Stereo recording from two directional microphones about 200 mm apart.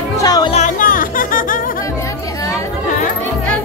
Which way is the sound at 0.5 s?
40° left (ahead or behind).